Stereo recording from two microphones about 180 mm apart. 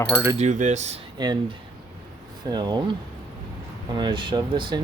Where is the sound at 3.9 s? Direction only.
25° right (ahead or behind).